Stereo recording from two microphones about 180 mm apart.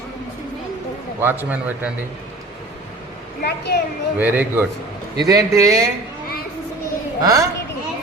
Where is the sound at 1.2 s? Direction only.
10° right (ahead or behind).